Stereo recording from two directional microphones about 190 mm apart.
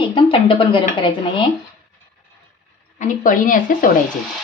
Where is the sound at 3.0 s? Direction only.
45° left (ahead or behind).